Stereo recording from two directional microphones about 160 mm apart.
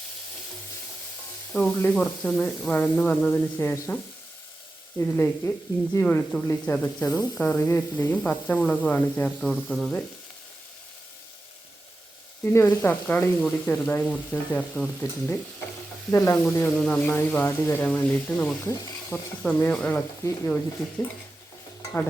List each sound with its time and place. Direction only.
1.5 s speech: 10° left (ahead or behind)
4.9 s speech: 15° left (ahead or behind)
12.5 s speech: 15° left (ahead or behind)